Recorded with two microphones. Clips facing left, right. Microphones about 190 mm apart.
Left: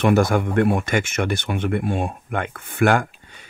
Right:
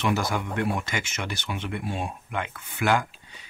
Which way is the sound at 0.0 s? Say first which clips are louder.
Left 9 dB; 55° left (ahead or behind).